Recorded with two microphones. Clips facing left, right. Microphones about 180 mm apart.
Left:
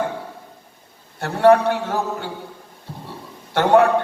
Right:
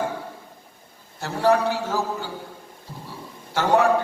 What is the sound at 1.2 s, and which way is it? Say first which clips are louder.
A man's voice: left 6 dB; 60° left (ahead or behind).